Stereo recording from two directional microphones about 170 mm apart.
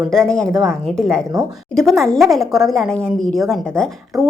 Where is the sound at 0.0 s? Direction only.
Centre (ahead or behind).